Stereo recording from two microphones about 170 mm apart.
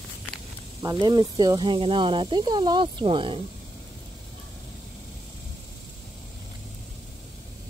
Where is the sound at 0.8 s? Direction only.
25° right (ahead or behind).